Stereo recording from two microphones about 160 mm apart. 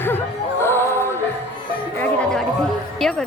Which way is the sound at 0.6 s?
15° left (ahead or behind).